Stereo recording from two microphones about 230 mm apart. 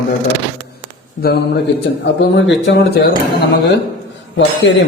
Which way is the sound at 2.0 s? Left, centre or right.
Left.